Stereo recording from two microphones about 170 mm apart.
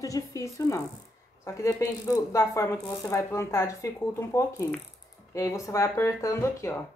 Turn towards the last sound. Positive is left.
turn(degrees=15)  # may be behind; listen again after turning